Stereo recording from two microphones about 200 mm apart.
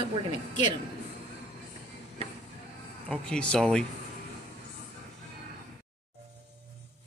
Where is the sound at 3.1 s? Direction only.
5° left (ahead or behind).